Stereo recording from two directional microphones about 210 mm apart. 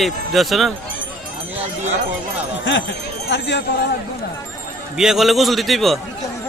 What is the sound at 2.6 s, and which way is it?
Speech, 60° left (ahead or behind).